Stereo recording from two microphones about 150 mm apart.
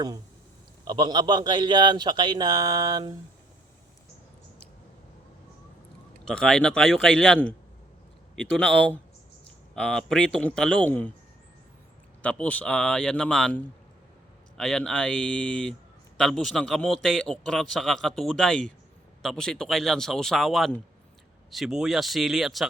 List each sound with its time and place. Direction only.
0.9 s a man's voice: 30° right (ahead or behind)
6.2 s speech: 5° left (ahead or behind)
8.4 s speech: 5° left (ahead or behind)
12.2 s speech: 10° left (ahead or behind)
14.6 s speech: 5° left (ahead or behind)